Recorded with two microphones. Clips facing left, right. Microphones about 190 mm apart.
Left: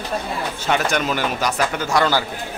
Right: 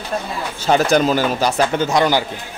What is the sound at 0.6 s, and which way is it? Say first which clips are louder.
Speech: right 7 dB; 35° right (ahead or behind).